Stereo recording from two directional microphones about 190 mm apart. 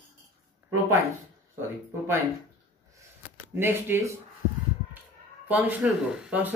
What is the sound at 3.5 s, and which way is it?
Speech, 10° right (ahead or behind).